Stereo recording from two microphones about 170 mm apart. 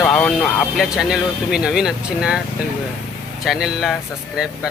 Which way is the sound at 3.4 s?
Centre (ahead or behind).